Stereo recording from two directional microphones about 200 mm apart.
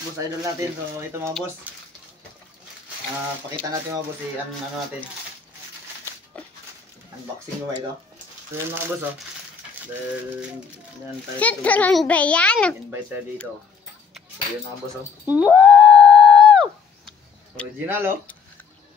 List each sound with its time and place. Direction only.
0.4 s speech: 15° right (ahead or behind)
11.3 s a child's voice: 5° left (ahead or behind)
15.2 s dog: 5° right (ahead or behind)
17.8 s speech: 10° right (ahead or behind)